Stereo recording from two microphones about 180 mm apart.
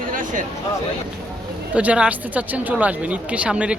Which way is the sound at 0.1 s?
45° right (ahead or behind).